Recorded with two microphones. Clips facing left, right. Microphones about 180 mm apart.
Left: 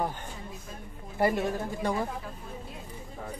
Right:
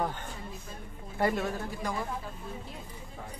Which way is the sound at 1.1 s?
15° left (ahead or behind).